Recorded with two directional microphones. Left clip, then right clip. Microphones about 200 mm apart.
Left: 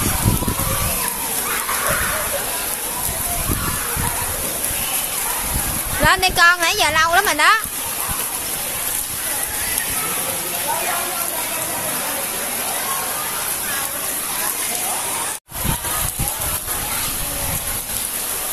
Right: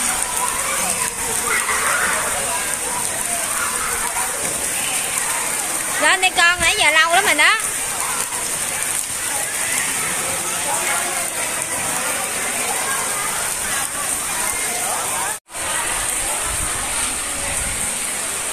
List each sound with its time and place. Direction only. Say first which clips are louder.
6.0 s a woman's voice: left 1 dB; 20° left (ahead or behind)